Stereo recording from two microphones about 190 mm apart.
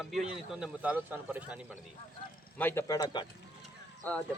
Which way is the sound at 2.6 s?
10° left (ahead or behind).